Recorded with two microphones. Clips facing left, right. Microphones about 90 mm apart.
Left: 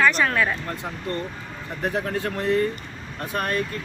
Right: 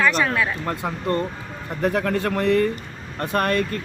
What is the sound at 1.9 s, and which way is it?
Speech, 75° right (ahead or behind).